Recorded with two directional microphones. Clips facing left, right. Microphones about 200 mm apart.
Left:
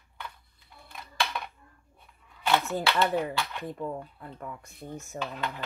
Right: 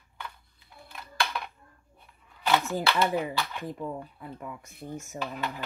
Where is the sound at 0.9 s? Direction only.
Centre (ahead or behind).